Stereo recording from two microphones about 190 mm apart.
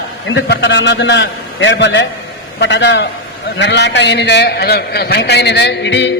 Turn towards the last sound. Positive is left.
turn(degrees=65)  # may be behind; listen again after turning